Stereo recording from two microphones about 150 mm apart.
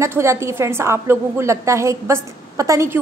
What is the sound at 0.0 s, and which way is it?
A woman's voice, 15° right (ahead or behind).